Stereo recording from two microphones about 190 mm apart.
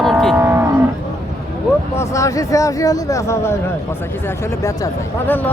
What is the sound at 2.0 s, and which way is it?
Speech, 15° left (ahead or behind).